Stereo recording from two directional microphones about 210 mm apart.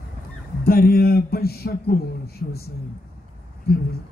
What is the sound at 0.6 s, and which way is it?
A man's voice, 45° left (ahead or behind).